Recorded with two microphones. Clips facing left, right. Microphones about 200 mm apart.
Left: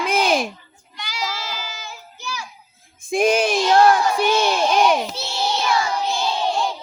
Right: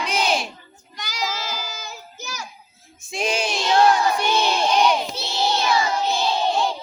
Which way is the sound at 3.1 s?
55° left (ahead or behind).